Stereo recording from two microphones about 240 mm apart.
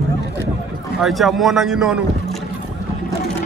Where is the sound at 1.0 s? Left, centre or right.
Centre.